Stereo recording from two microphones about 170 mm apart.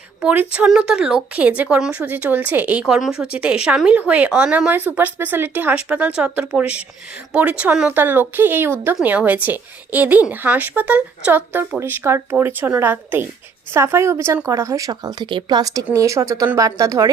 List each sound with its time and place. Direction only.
0.2 s speech: 5° right (ahead or behind)